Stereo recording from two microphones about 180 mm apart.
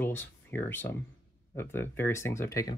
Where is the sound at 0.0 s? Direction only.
10° left (ahead or behind).